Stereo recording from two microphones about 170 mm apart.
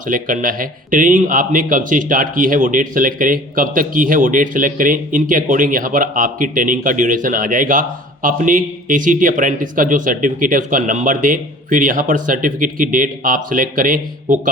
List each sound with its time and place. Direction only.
0.1 s speech: 55° right (ahead or behind)